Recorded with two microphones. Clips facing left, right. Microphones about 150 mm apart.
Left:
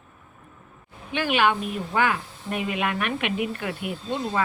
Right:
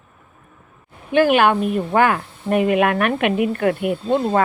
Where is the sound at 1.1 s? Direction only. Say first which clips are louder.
Right 8 dB; 50° right (ahead or behind).